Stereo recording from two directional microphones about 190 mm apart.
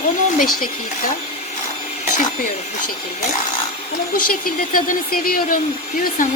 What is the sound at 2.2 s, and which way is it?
Speech, 45° left (ahead or behind).